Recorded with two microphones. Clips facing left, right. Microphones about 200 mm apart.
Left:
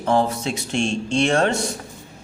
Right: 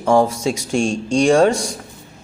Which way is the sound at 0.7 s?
45° right (ahead or behind).